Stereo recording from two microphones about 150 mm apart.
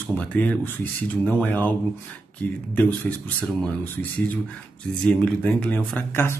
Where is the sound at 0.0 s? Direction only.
10° left (ahead or behind).